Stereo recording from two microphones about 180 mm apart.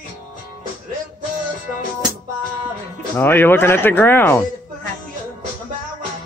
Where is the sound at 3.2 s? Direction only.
10° left (ahead or behind).